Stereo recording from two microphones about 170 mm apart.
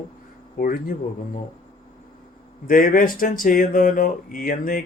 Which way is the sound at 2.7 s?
55° left (ahead or behind).